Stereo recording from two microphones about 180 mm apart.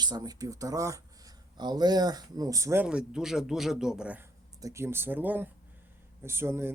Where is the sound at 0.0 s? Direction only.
20° right (ahead or behind).